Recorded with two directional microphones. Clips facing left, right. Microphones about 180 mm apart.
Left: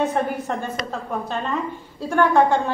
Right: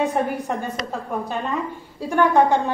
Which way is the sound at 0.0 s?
15° right (ahead or behind).